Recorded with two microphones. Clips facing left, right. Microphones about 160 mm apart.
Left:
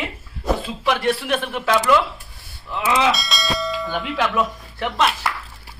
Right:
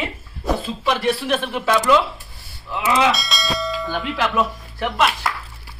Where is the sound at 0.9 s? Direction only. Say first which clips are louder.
Even; 20° right (ahead or behind).